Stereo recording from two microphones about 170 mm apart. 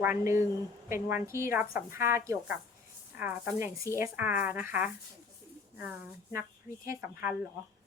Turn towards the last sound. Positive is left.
turn(degrees=-15)  # may be behind; listen again after turning